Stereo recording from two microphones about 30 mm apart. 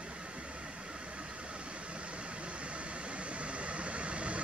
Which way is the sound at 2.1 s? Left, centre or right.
Right.